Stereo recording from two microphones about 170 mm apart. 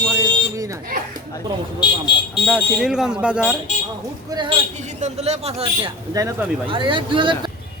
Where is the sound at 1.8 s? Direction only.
25° left (ahead or behind).